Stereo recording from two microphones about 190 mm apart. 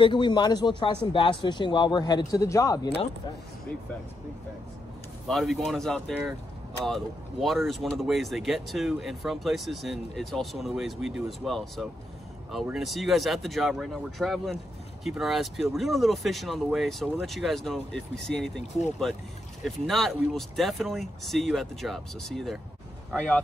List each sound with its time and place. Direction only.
0.0 s speech: 25° left (ahead or behind)
5.3 s speech: centre (ahead or behind)
19.6 s speech: centre (ahead or behind)